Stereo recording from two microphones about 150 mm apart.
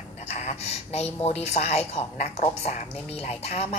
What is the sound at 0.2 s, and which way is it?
A woman's voice, 50° left (ahead or behind).